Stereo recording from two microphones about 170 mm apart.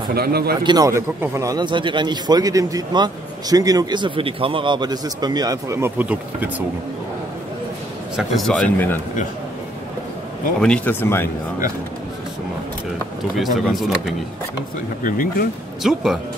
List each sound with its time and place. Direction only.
0.1 s speech: 65° right (ahead or behind)
0.7 s a man's voice: 20° right (ahead or behind)
8.2 s speech: centre (ahead or behind)
10.6 s speech: 5° left (ahead or behind)
13.4 s speech: centre (ahead or behind)
15.0 s speech: 55° left (ahead or behind)
15.8 s speech: centre (ahead or behind)